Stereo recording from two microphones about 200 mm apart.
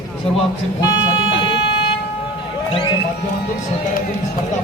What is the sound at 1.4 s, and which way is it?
Vehicle, 25° left (ahead or behind).